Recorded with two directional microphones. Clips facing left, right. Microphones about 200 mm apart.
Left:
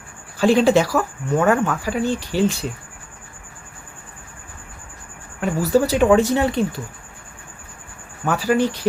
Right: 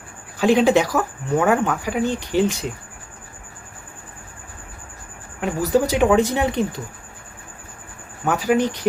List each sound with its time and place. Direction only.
0.3 s speech: 15° right (ahead or behind)
5.4 s speech: 15° right (ahead or behind)
8.4 s speech: 15° right (ahead or behind)